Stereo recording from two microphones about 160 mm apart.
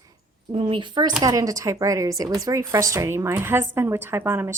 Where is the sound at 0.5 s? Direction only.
35° right (ahead or behind).